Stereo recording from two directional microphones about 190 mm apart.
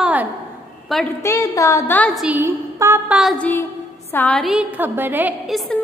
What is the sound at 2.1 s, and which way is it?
A woman's voice, 10° right (ahead or behind).